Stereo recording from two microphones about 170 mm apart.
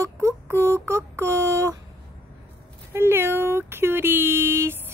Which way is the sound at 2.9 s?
15° right (ahead or behind).